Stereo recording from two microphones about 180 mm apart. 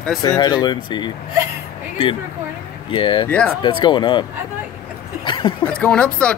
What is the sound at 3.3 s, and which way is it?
Speech, 10° left (ahead or behind).